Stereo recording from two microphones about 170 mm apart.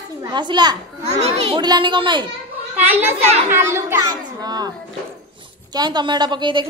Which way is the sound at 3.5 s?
15° right (ahead or behind).